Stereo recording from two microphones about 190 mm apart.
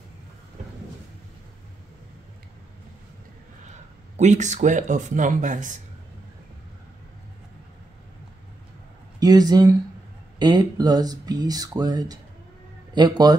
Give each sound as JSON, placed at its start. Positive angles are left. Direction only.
{"t": 4.2, "sound": "speech", "side_deg": -40}
{"t": 9.2, "sound": "speech", "side_deg": -20}